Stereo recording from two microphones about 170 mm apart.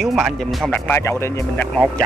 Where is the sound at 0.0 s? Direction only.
Centre (ahead or behind); by 1.7 s 15° left (ahead or behind).